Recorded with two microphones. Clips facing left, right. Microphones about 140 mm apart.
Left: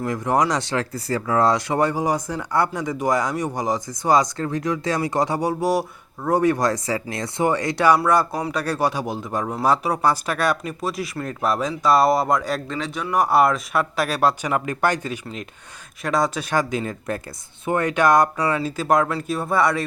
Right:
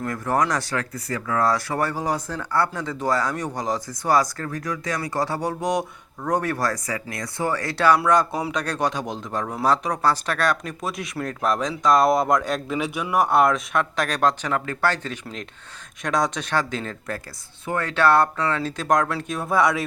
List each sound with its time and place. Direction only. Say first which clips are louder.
0.0 s speech: left 2 dB; 15° left (ahead or behind)
12.6 s speech: right 1 dB; 10° right (ahead or behind)